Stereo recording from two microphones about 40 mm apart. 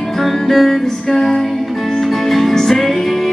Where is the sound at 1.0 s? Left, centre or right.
Centre.